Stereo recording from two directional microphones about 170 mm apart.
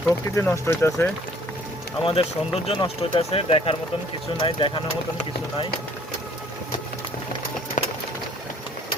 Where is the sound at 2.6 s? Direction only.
35° left (ahead or behind).